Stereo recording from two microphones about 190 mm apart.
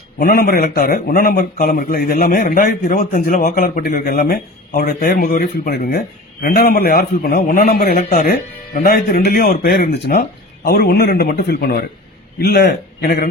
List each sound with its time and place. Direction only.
0.2 s a man's voice: 50° left (ahead or behind)